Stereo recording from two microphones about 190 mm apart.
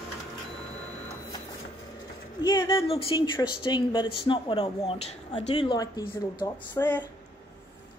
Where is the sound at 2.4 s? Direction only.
25° left (ahead or behind).